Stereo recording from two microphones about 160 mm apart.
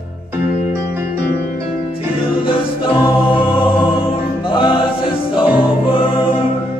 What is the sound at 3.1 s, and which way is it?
Music, 35° left (ahead or behind).